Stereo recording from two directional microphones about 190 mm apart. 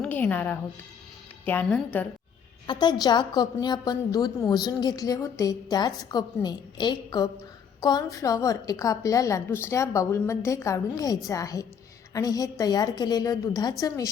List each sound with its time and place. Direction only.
0.0 s a woman's voice: 10° left (ahead or behind)
2.6 s a woman's voice: 25° left (ahead or behind)